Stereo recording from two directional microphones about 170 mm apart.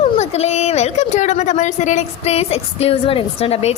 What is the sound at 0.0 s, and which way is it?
Speech, 40° left (ahead or behind).